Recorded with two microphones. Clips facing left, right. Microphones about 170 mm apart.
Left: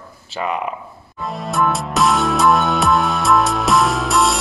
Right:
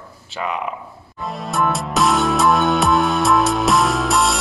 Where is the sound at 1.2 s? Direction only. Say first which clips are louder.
Left 1 dB; centre (ahead or behind).